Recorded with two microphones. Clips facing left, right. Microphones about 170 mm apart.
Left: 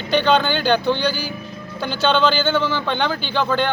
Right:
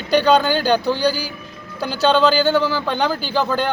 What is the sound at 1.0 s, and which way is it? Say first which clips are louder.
Speech: right 3 dB; 35° right (ahead or behind).